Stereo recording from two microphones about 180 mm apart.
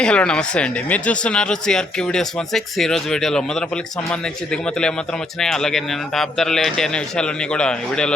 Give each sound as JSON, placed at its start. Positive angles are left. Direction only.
{"t": 0.0, "sound": "speech", "side_deg": 5}
{"t": 5.4, "sound": "speech", "side_deg": 5}